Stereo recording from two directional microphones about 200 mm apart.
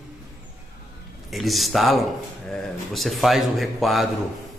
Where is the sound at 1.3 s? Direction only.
Centre (ahead or behind).